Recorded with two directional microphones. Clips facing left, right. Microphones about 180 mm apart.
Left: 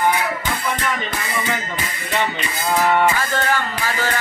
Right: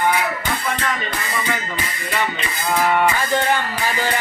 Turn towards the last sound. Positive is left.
turn(degrees=-15)  # may be behind; listen again after turning